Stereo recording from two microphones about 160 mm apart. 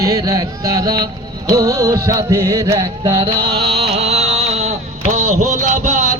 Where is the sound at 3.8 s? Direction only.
40° right (ahead or behind).